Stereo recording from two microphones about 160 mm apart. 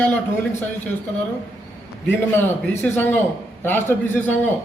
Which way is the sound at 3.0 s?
15° left (ahead or behind).